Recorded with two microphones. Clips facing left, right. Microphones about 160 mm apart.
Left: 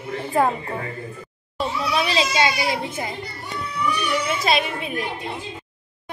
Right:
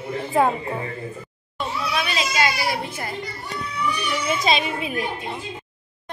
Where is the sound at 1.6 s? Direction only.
30° left (ahead or behind).